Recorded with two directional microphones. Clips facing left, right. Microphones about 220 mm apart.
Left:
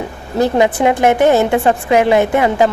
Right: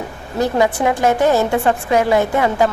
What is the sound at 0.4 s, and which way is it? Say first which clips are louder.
A woman's voice: left 3 dB; 20° left (ahead or behind).